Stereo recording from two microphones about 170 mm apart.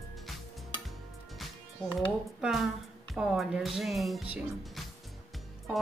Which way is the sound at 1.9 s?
Centre (ahead or behind).